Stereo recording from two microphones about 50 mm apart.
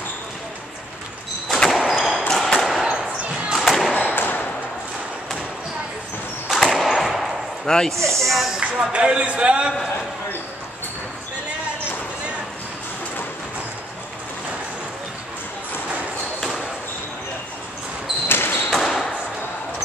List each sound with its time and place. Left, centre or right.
1.5 s door: centre
1.8 s basketball bounce: centre
2.2 s basketball bounce: centre
2.9 s basketball bounce: right
3.5 s music: centre
4.1 s thump: left
6.5 s a sound: centre
7.6 s speech: centre
8.2 s speech: centre
8.5 s speech: right
18.3 s basketball bounce: left
18.7 s a sound: centre